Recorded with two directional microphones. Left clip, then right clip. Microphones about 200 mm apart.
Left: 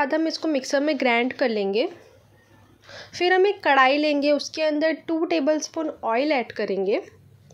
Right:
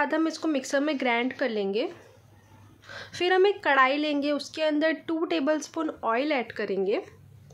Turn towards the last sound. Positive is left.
turn(degrees=10)  # may be behind; listen again after turning